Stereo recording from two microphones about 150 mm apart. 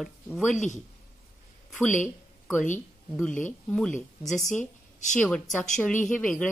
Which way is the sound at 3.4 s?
10° left (ahead or behind).